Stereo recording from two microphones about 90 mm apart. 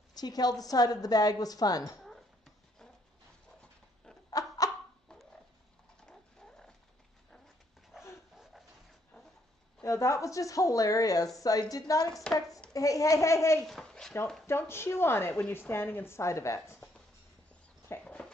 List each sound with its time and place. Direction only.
0.1 s a woman's voice: 45° left (ahead or behind)
2.0 s a sound: 5° left (ahead or behind)
4.3 s a sound: 45° left (ahead or behind)
6.0 s dog: 5° left (ahead or behind)
7.9 s dog: centre (ahead or behind)
9.8 s a woman's voice: 35° left (ahead or behind)
12.1 s chopping: 5° left (ahead or behind)
12.7 s a woman's voice: 40° left (ahead or behind)
13.7 s speech: 5° left (ahead or behind)
14.4 s a woman's voice: 25° left (ahead or behind)
18.2 s a sound: 10° left (ahead or behind)